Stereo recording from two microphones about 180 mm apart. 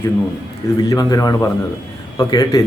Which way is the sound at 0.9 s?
20° left (ahead or behind).